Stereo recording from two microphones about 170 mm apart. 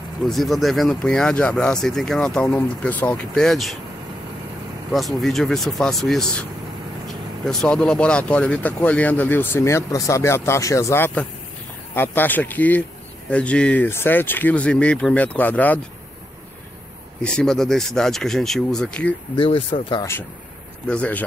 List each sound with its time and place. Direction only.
0.2 s speech: centre (ahead or behind)
4.9 s speech: centre (ahead or behind)
7.4 s speech: 5° left (ahead or behind)
17.2 s speech: 5° left (ahead or behind)
19.3 s speech: 30° left (ahead or behind)
19.9 s speech: 15° left (ahead or behind)